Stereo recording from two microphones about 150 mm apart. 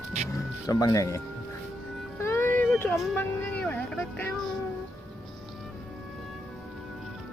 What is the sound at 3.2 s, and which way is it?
Music, 10° left (ahead or behind).